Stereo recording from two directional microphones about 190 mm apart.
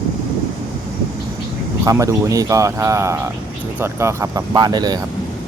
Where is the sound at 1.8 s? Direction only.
15° right (ahead or behind).